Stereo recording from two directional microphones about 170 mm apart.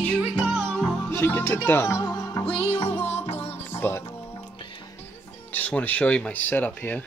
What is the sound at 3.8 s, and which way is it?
Speech, 15° left (ahead or behind).